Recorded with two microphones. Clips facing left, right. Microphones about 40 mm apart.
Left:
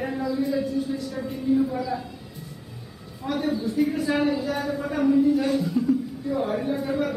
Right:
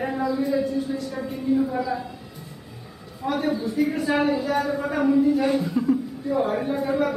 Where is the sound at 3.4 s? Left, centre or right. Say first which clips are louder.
Even; centre.